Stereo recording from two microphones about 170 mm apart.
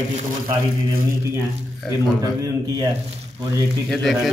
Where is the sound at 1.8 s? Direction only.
Centre (ahead or behind).